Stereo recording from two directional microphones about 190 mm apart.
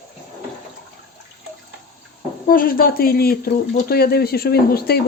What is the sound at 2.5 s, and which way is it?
Speech, 50° left (ahead or behind).